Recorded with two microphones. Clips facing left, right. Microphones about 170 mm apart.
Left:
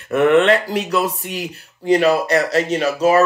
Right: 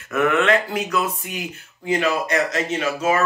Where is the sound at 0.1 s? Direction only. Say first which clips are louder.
Left 5 dB; 30° left (ahead or behind).